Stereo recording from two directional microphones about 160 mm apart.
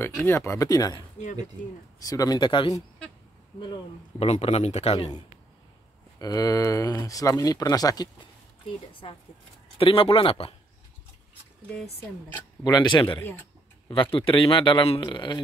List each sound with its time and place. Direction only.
0.0 s speech: 15° left (ahead or behind)
4.3 s speech: 40° left (ahead or behind)
6.1 s speech: 25° left (ahead or behind)
9.0 s speech: 35° left (ahead or behind)
12.6 s speech: 25° left (ahead or behind)